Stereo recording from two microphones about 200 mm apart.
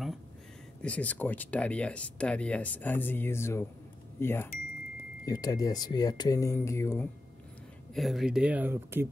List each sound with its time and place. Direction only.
0.8 s speech: 5° left (ahead or behind)
7.9 s speech: centre (ahead or behind)